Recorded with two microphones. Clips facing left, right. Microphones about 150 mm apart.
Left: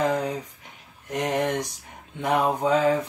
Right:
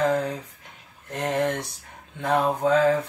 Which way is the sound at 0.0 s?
15° left (ahead or behind).